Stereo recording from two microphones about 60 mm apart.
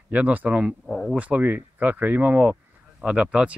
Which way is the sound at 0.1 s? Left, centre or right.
Right.